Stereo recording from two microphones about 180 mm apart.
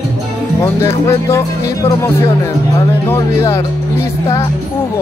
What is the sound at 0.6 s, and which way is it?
Speech, 15° left (ahead or behind).